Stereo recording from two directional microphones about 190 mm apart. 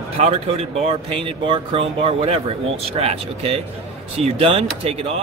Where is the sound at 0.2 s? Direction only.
35° right (ahead or behind).